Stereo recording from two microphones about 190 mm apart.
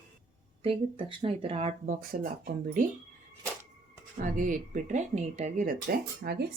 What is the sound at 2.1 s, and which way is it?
Speech, 50° right (ahead or behind).